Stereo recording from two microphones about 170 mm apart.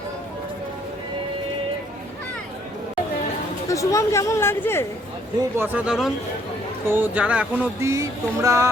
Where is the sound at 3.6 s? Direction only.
20° left (ahead or behind).